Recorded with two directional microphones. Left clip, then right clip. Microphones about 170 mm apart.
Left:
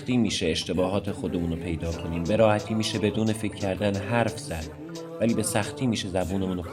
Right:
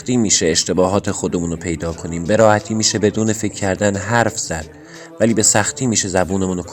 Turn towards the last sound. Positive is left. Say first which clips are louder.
# right 10 dB
turn(degrees=-45)  # may be behind; listen again after turning